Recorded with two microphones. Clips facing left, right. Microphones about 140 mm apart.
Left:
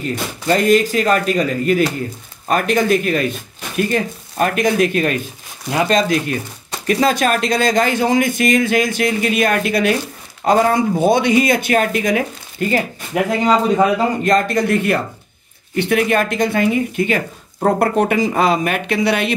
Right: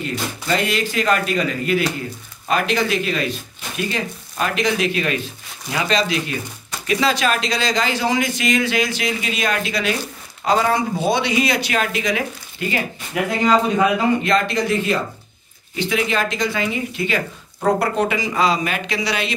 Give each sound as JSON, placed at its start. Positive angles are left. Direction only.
{"t": 0.1, "sound": "speech", "side_deg": 45}
{"t": 14.7, "sound": "speech", "side_deg": 60}